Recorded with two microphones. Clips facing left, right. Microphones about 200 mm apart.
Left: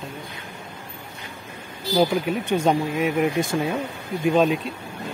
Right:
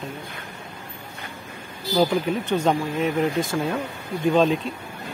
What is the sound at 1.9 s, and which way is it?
Speech, 5° left (ahead or behind).